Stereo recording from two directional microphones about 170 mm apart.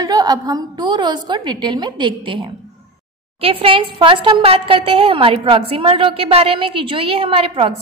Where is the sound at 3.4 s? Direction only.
30° right (ahead or behind).